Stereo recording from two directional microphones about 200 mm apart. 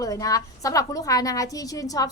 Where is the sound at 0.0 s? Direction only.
15° left (ahead or behind).